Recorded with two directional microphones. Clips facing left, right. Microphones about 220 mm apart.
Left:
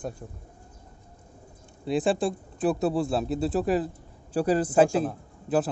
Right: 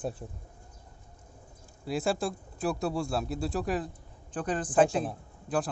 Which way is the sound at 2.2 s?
20° left (ahead or behind).